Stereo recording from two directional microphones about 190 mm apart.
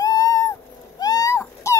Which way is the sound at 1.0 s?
20° left (ahead or behind).